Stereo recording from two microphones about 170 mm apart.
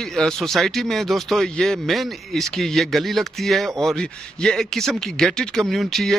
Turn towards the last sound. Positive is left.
turn(degrees=0)  # may be behind; listen again after turning